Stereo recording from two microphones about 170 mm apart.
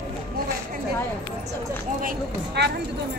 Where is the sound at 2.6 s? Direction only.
80° right.